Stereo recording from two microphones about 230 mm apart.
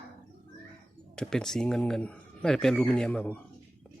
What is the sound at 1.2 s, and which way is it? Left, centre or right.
Speech, centre.